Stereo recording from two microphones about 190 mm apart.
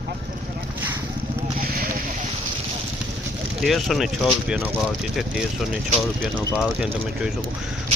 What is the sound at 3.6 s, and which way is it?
Speech, centre (ahead or behind).